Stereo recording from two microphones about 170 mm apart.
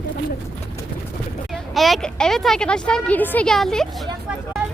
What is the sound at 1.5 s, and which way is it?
A woman's voice, centre (ahead or behind).